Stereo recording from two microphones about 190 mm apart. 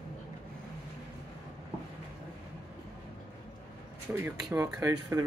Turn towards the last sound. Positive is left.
turn(degrees=-15)  # may be behind; listen again after turning